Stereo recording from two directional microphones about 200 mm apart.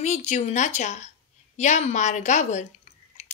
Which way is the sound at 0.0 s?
35° left (ahead or behind).